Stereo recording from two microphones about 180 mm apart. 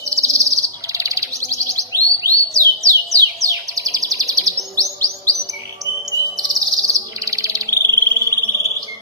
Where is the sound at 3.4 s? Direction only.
20° right (ahead or behind).